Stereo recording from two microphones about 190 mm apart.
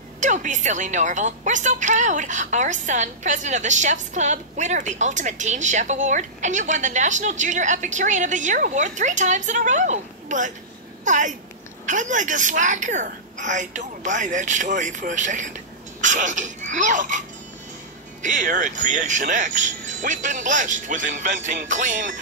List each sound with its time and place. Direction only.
0.2 s a woman's voice: 40° right (ahead or behind)
18.2 s a woman's voice: 45° right (ahead or behind)